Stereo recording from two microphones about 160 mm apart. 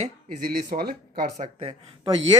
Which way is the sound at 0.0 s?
65° right (ahead or behind).